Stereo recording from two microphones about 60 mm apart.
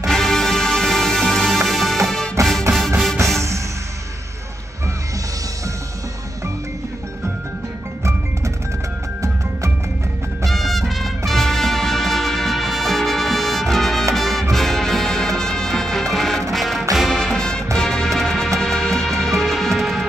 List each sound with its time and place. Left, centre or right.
0.0 s music: centre
2.4 s music: right
10.4 s music: centre
17.3 s music: centre